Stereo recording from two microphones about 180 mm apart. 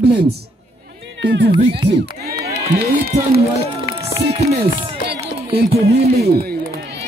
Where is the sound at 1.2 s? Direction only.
65° right (ahead or behind).